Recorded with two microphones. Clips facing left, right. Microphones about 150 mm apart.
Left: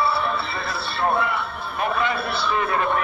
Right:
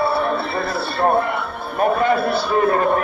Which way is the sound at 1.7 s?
45° right (ahead or behind).